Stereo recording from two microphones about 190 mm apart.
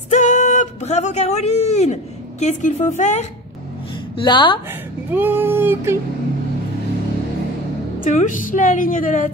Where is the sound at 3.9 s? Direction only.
25° left (ahead or behind).